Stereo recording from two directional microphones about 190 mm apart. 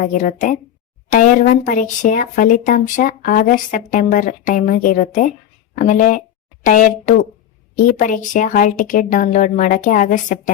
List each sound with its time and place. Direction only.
0.0 s a woman's voice: 45° left (ahead or behind)